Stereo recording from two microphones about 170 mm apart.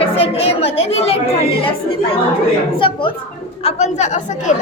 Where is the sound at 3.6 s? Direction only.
40° left (ahead or behind).